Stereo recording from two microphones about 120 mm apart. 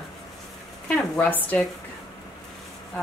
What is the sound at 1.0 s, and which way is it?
Speech, 15° left (ahead or behind).